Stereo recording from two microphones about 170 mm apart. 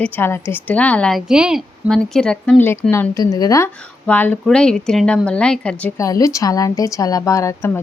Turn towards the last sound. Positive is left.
turn(degrees=20)  # may be behind; listen again after turning